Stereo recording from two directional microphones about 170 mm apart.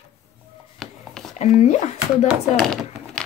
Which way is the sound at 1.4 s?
40° left (ahead or behind).